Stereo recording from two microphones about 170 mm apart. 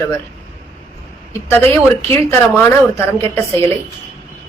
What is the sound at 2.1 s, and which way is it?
A woman's voice, 15° left (ahead or behind).